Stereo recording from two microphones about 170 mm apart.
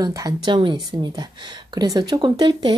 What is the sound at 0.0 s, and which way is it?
Speech, 20° right (ahead or behind).